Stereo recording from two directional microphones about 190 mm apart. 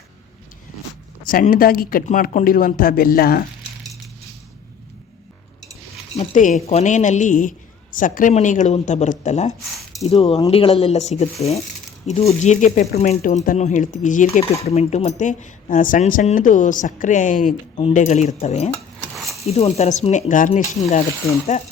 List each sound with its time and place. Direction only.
1.2 s speech: 50° left (ahead or behind)
6.1 s speech: 40° left (ahead or behind)
18.9 s dishes: centre (ahead or behind)
19.5 s speech: 35° left (ahead or behind)